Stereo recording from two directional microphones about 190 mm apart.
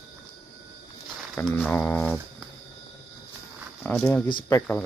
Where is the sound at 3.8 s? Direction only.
10° left (ahead or behind).